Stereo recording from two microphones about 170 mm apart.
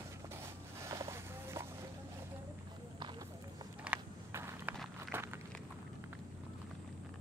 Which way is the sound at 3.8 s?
10° right (ahead or behind).